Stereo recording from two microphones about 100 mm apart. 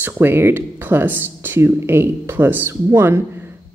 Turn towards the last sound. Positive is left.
turn(degrees=-25)  # may be behind; listen again after turning